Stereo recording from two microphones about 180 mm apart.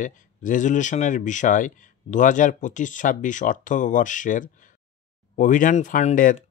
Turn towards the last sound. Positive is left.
turn(degrees=45)  # may be behind; listen again after turning